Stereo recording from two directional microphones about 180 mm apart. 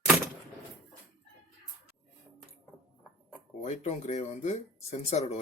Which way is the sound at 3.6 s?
35° left (ahead or behind).